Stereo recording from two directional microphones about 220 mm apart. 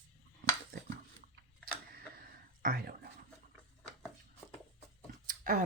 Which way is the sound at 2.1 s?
40° right (ahead or behind).